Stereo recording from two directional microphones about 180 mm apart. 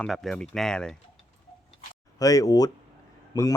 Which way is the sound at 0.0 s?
Centre (ahead or behind).